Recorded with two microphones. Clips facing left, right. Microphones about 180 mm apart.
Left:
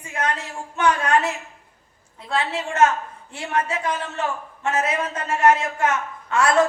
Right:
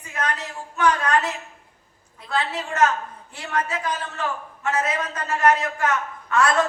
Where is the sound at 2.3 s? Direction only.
25° left (ahead or behind).